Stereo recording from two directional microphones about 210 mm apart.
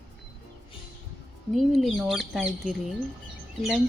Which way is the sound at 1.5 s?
Centre (ahead or behind).